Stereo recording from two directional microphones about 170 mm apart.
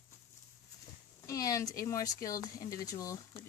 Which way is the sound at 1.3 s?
20° left (ahead or behind).